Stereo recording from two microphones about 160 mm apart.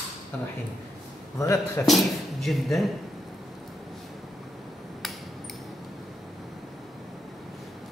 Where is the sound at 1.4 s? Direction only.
20° left (ahead or behind).